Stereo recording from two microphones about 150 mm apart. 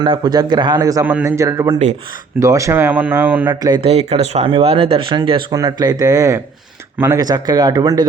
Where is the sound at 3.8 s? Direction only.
45° right (ahead or behind).